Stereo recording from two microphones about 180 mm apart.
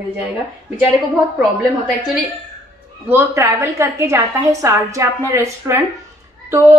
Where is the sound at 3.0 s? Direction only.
15° right (ahead or behind).